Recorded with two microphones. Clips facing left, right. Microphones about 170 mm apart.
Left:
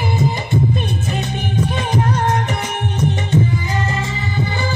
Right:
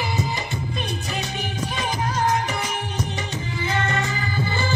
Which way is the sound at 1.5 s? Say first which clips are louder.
Left 9 dB; 55° left (ahead or behind).